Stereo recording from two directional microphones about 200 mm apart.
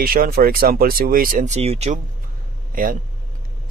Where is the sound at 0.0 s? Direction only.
50° right (ahead or behind); by 2.0 s 30° right (ahead or behind).